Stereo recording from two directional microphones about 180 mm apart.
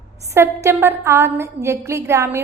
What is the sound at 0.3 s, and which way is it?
A woman's voice, 15° right (ahead or behind).